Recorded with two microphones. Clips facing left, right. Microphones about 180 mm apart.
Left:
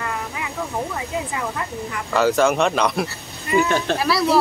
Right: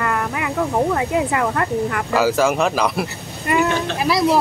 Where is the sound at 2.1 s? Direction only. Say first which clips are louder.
Even; 5° right (ahead or behind).